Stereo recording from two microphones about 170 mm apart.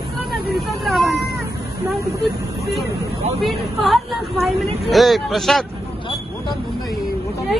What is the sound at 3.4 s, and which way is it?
Speech, centre (ahead or behind).